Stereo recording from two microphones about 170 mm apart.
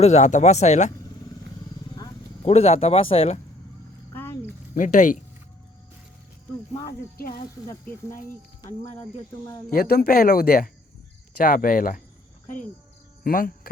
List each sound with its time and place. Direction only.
0.0 s speech: 40° left (ahead or behind)
2.5 s speech: 40° left (ahead or behind)
4.1 s a sound: 10° left (ahead or behind)
4.7 s speech: 50° left (ahead or behind)
7.2 s speech: 60° left (ahead or behind)
9.6 s speech: 60° left (ahead or behind)
13.2 s speech: 55° left (ahead or behind)